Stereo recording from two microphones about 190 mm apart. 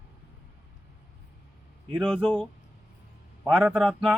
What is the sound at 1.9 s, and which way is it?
Speech, 5° left (ahead or behind).